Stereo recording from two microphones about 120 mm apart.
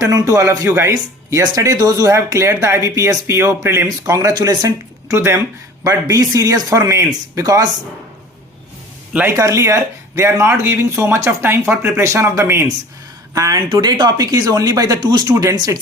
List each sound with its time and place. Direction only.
0.0 s speech: 30° right (ahead or behind)
9.1 s speech: 20° right (ahead or behind)